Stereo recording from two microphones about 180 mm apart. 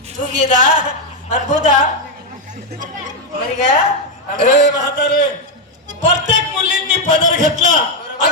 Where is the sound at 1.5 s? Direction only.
45° right (ahead or behind).